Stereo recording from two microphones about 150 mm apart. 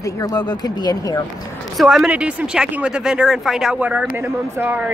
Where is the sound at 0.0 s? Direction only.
25° left (ahead or behind).